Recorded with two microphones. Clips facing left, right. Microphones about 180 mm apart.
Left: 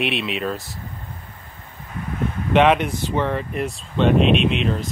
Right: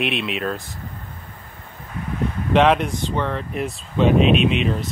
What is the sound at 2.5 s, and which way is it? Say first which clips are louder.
Speech: even; centre (ahead or behind).